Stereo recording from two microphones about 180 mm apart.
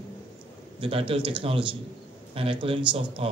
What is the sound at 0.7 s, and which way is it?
A man's voice, 30° right (ahead or behind).